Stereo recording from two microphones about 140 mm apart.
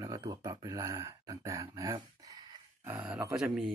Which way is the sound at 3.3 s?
5° right (ahead or behind).